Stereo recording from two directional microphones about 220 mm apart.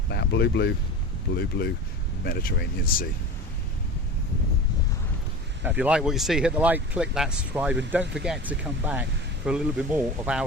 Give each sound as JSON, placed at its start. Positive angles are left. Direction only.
{"t": 0.1, "sound": "speech", "side_deg": 50}
{"t": 5.6, "sound": "speech", "side_deg": -5}